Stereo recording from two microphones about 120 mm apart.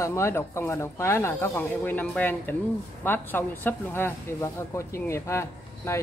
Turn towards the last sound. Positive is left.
turn(degrees=25)  # may be behind; listen again after turning